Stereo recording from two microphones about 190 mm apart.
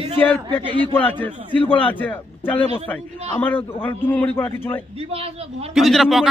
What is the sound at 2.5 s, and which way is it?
Speech, 30° left (ahead or behind).